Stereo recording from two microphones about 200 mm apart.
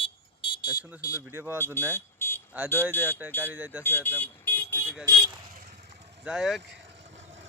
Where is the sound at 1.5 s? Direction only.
10° left (ahead or behind).